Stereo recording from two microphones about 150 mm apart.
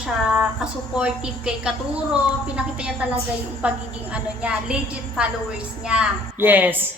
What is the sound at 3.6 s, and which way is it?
Speech, 10° right (ahead or behind).